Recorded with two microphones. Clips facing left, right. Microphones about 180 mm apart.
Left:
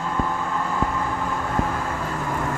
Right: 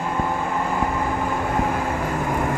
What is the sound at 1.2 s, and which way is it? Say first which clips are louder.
Vehicle: right 2 dB; 15° right (ahead or behind).